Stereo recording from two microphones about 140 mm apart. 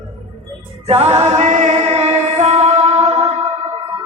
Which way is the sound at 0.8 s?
50° right (ahead or behind).